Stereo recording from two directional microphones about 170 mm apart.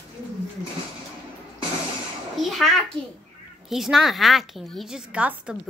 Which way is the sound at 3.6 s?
Centre (ahead or behind).